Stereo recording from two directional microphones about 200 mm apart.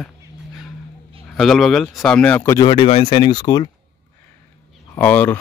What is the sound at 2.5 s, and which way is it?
Speech, 25° left (ahead or behind).